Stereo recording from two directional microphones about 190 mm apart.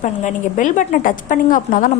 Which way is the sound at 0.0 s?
40° left (ahead or behind).